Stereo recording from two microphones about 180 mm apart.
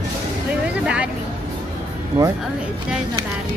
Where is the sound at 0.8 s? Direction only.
5° right (ahead or behind).